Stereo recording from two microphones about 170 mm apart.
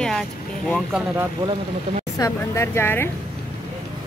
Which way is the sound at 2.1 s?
20° left (ahead or behind).